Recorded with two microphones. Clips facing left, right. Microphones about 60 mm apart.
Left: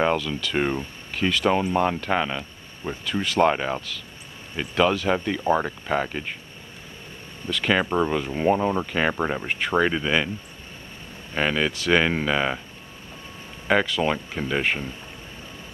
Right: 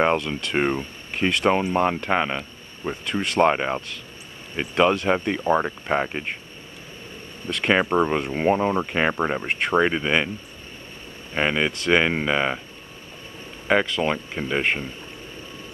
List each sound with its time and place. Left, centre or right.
0.3 s speech: right
5.4 s speech: centre
5.9 s speech: centre
7.4 s speech: centre
8.1 s speech: right
11.3 s speech: centre
13.7 s speech: centre